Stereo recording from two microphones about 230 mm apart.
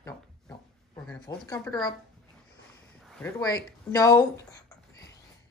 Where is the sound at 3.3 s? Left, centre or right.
Centre.